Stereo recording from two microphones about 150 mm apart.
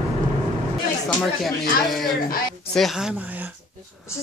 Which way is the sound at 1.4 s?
Centre (ahead or behind).